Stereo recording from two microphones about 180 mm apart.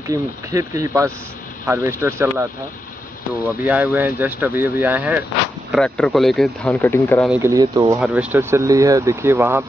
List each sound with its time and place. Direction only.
0.1 s speech: 15° right (ahead or behind)
3.4 s speech: 10° right (ahead or behind)
5.7 s speech: 5° left (ahead or behind)
7.2 s speech: 15° right (ahead or behind)
8.0 s speech: 5° right (ahead or behind)